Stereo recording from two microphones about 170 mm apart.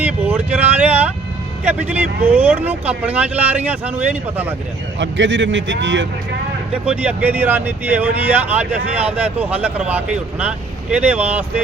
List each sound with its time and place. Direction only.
0.0 s speech: 10° right (ahead or behind)
4.9 s a man's voice: 90° right
6.8 s speech: 10° right (ahead or behind)